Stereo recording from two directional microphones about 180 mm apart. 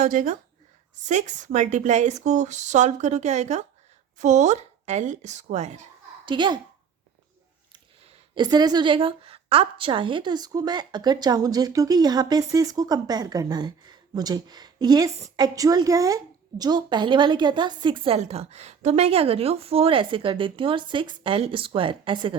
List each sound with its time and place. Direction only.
0.0 s a woman's voice: 45° right (ahead or behind)
6.2 s speech: 25° right (ahead or behind)
7.7 s speech: 25° right (ahead or behind)